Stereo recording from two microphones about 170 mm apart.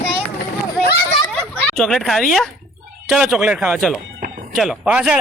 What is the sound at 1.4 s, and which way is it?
Speech, 5° left (ahead or behind).